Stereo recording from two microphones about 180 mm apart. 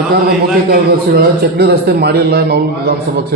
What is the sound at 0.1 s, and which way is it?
A man's voice, 60° right (ahead or behind).